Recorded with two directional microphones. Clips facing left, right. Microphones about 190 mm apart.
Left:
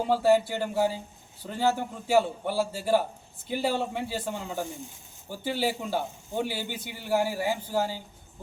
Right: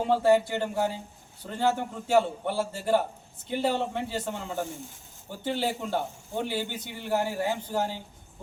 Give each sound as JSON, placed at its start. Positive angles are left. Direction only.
{"t": 0.1, "sound": "a man's voice", "side_deg": 5}